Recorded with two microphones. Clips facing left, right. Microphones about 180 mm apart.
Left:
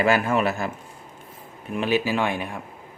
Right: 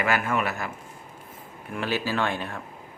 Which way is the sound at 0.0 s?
30° left (ahead or behind).